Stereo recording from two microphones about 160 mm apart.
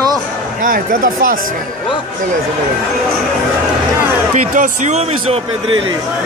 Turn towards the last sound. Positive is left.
turn(degrees=-45)  # may be behind; listen again after turning